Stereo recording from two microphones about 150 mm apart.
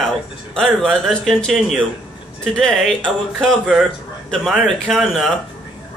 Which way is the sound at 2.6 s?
Centre (ahead or behind).